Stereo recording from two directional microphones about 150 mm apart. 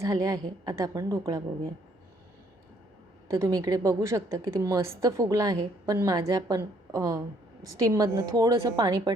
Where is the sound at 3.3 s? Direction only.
20° right (ahead or behind).